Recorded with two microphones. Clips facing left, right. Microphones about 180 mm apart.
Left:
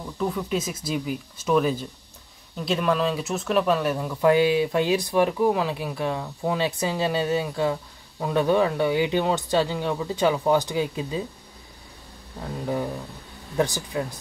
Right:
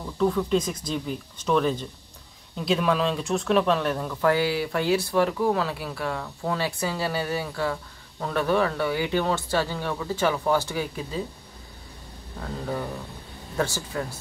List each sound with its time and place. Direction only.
0.0 s speech: 5° left (ahead or behind)
12.4 s speech: 15° left (ahead or behind)